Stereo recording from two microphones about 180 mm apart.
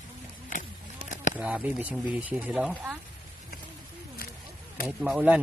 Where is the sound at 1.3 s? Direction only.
10° right (ahead or behind).